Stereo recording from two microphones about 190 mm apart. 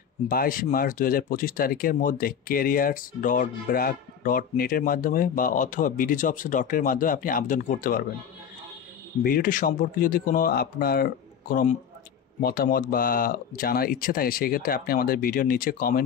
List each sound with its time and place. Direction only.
0.3 s speech: 50° left (ahead or behind)
9.2 s speech: 45° left (ahead or behind)